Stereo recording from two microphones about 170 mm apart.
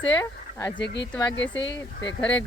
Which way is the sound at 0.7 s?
90° left.